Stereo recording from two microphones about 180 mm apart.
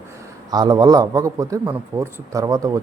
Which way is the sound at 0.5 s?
20° right (ahead or behind).